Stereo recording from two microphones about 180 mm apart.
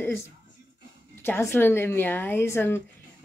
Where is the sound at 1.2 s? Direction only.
10° left (ahead or behind).